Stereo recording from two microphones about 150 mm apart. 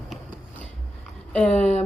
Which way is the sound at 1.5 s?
45° left (ahead or behind).